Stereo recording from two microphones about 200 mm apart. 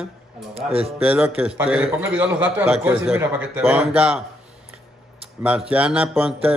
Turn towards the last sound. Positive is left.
turn(degrees=-5)  # may be behind; listen again after turning